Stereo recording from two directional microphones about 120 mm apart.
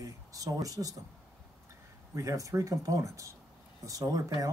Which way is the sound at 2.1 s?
25° right (ahead or behind).